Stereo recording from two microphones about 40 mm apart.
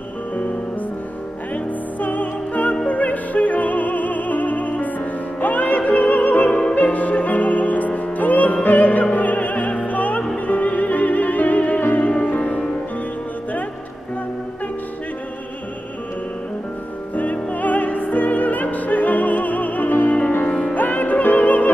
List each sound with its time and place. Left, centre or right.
1.5 s music: left
9.1 s opera: left
10.3 s music: left
17.1 s music: left
20.4 s music: left
20.7 s music: left